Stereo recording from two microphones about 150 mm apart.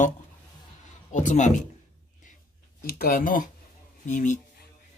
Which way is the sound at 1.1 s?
55° left (ahead or behind).